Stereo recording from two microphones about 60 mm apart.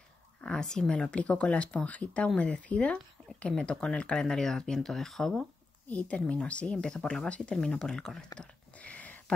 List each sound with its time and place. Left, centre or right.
0.4 s speech: centre
5.9 s speech: left
8.4 s a sound: left